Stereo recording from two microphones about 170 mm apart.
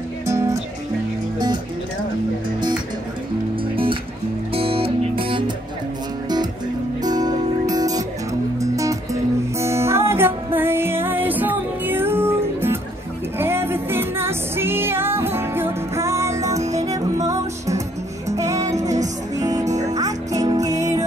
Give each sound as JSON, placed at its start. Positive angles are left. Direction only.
{"t": 0.3, "sound": "music", "side_deg": -15}
{"t": 3.7, "sound": "music", "side_deg": -30}
{"t": 7.0, "sound": "music", "side_deg": -20}
{"t": 18.8, "sound": "music", "side_deg": -45}
{"t": 19.8, "sound": "music", "side_deg": -20}